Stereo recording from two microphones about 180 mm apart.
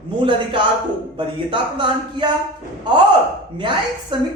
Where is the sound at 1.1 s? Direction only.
25° right (ahead or behind).